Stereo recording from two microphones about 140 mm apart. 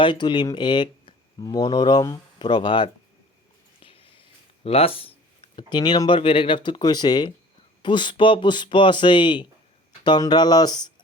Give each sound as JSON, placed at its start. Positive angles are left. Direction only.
{"t": 0.0, "sound": "speech", "side_deg": 35}
{"t": 4.6, "sound": "speech", "side_deg": 45}